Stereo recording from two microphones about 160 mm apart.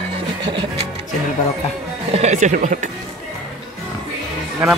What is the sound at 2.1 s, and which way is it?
Speech, 45° right (ahead or behind).